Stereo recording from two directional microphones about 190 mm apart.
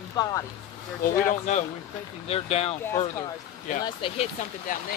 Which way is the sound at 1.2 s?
40° left (ahead or behind).